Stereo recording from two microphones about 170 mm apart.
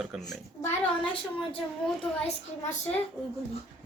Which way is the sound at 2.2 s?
40° left (ahead or behind).